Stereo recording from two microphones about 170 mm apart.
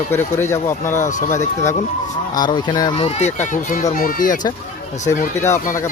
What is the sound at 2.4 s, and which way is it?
Speech, 25° left (ahead or behind).